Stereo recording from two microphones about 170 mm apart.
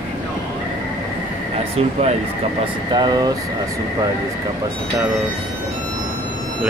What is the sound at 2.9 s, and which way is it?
Speech, 25° right (ahead or behind).